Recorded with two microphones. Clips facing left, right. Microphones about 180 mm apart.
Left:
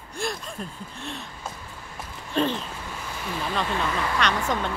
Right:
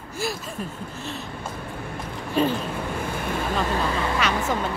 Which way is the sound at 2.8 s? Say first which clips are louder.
Right 8 dB; 55° right (ahead or behind).